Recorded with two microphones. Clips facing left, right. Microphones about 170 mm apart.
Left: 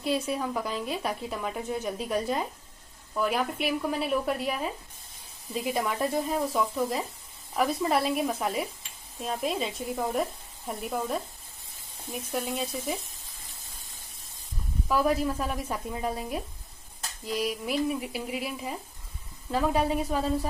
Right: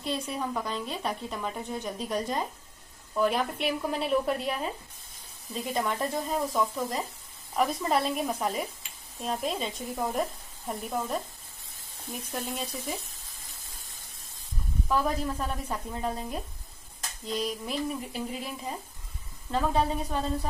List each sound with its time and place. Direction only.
0.0 s a woman's voice: 5° left (ahead or behind)
12.1 s a woman's voice: 5° left (ahead or behind)
14.9 s speech: 10° left (ahead or behind)